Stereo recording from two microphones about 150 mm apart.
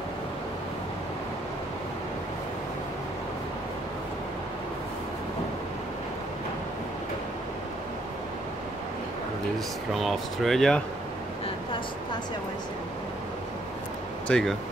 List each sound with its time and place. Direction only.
9.9 s speech: centre (ahead or behind)
11.4 s a sound: 35° left (ahead or behind)
14.2 s speech: 5° left (ahead or behind)